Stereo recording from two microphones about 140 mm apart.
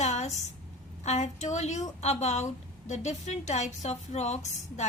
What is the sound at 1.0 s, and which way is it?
A woman's voice, 55° left (ahead or behind).